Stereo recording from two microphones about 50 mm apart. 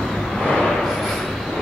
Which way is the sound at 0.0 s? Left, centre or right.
Centre.